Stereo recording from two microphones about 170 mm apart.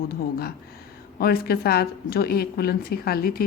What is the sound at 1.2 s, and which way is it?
A woman's voice, 65° left (ahead or behind).